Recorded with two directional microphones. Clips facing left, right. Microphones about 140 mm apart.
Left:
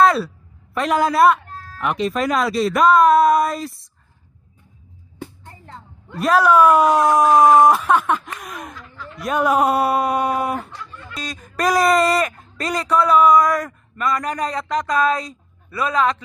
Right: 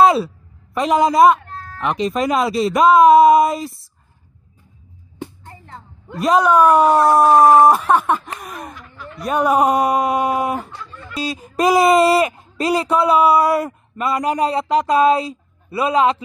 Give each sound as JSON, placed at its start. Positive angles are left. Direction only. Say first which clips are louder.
{"t": 0.0, "sound": "a sound", "louder": "right 2 dB", "side_deg": 0}
{"t": 0.7, "sound": "speech", "louder": "right 3 dB", "side_deg": 0}
{"t": 6.1, "sound": "speech", "louder": "right 1 dB", "side_deg": 0}
{"t": 6.6, "sound": "speech", "louder": "right 2 dB", "side_deg": -10}
{"t": 9.8, "sound": "speech", "louder": "right 2 dB", "side_deg": 0}
{"t": 12.4, "sound": "a sound", "louder": "right 6 dB", "side_deg": -30}
{"t": 13.0, "sound": "a man's voice", "louder": "left 1 dB", "side_deg": -30}